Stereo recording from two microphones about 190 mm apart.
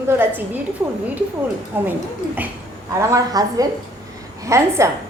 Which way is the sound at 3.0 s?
15° right (ahead or behind).